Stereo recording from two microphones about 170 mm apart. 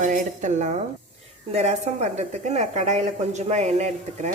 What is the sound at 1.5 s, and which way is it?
A woman's voice, 40° right (ahead or behind).